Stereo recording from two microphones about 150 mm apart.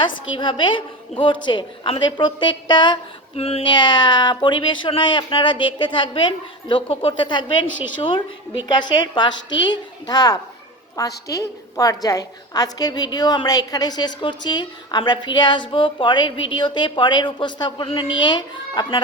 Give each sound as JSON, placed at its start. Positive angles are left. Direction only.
{"t": 0.0, "sound": "a woman's voice", "side_deg": 30}